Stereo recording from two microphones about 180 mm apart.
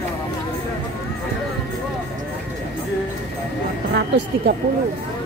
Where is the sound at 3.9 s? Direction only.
65° right (ahead or behind).